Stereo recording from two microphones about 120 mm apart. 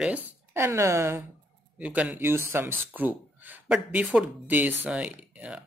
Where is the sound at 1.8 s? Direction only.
10° right (ahead or behind).